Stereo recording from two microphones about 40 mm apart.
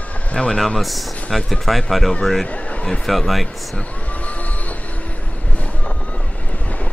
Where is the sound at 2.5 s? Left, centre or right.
Left.